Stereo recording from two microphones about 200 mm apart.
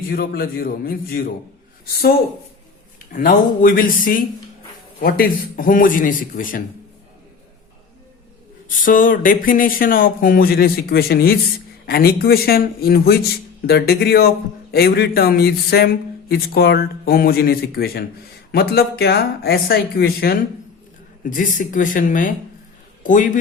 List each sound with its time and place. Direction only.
0.1 s a man's voice: 50° left (ahead or behind)
3.1 s a man's voice: 45° left (ahead or behind)
8.8 s a man's voice: 45° left (ahead or behind)